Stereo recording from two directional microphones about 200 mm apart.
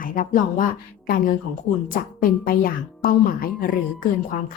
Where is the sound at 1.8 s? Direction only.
45° left (ahead or behind).